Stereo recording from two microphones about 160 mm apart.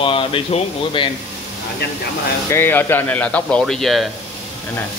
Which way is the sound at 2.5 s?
15° left (ahead or behind).